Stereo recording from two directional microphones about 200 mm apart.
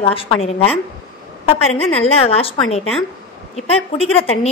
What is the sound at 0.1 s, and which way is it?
A woman's voice, 25° left (ahead or behind).